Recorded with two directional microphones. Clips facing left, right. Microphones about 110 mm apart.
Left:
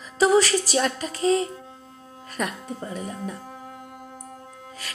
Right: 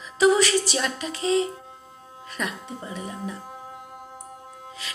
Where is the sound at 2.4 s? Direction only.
45° left (ahead or behind).